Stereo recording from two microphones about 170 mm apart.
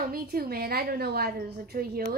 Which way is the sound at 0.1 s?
60° right (ahead or behind).